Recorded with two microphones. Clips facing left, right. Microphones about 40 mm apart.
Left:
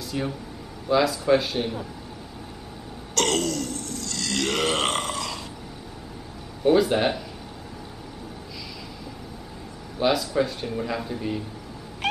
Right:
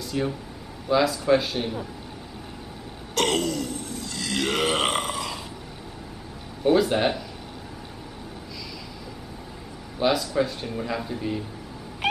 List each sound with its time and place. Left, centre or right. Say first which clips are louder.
0.1 s a man's voice: right 2 dB; centre
3.2 s burping: even; centre
6.6 s a man's voice: left 1 dB; centre
9.9 s a man's voice: even; centre